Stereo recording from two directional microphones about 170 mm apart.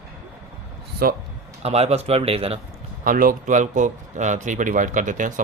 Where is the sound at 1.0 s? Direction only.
60° right (ahead or behind).